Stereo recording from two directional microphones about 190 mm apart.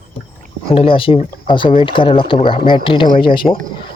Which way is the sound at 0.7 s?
30° left (ahead or behind).